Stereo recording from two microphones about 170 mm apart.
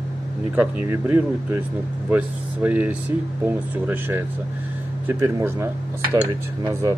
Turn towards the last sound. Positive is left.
turn(degrees=-20)  # may be behind; listen again after turning